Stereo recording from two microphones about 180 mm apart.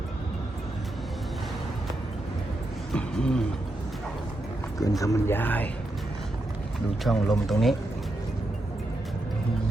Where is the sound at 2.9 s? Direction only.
5° left (ahead or behind).